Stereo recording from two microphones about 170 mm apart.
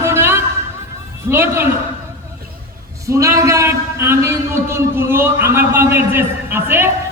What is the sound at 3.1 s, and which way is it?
A man's voice, 20° right (ahead or behind).